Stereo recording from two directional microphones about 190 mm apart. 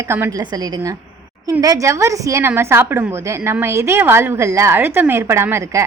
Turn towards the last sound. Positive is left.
turn(degrees=-15)  # may be behind; listen again after turning